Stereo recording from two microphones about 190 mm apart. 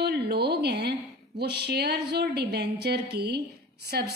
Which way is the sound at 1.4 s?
60° right (ahead or behind).